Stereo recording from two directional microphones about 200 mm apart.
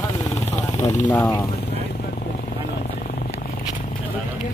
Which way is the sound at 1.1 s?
10° left (ahead or behind).